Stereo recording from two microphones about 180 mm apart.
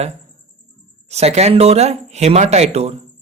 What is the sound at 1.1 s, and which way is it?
Speech, 35° right (ahead or behind).